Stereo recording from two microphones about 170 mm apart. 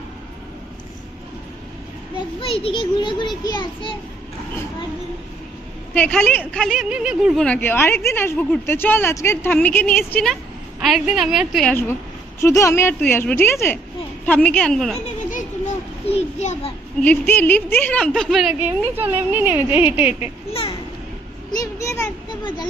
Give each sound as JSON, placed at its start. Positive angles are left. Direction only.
{"t": 2.4, "sound": "a child's voice", "side_deg": 35}
{"t": 5.9, "sound": "speech", "side_deg": 5}
{"t": 7.4, "sound": "a woman's voice", "side_deg": 10}
{"t": 12.4, "sound": "a woman's voice", "side_deg": 15}
{"t": 15.0, "sound": "children playing", "side_deg": 50}
{"t": 16.0, "sound": "a sound", "side_deg": 40}
{"t": 17.0, "sound": "speech", "side_deg": 10}
{"t": 20.5, "sound": "children playing", "side_deg": 35}
{"t": 21.5, "sound": "a sound", "side_deg": 20}